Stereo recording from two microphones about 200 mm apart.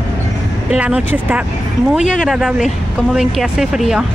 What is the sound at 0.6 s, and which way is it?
A woman's voice, 5° right (ahead or behind).